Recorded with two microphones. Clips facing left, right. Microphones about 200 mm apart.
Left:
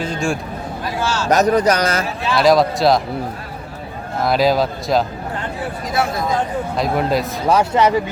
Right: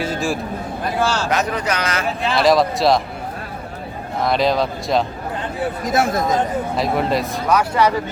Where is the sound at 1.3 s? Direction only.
40° left (ahead or behind).